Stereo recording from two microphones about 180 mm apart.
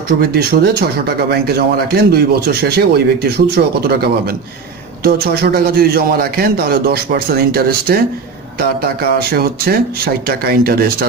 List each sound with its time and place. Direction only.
0.2 s speech: 60° right (ahead or behind)